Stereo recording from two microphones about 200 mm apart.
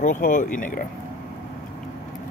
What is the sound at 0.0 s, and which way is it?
Speech, 40° left (ahead or behind).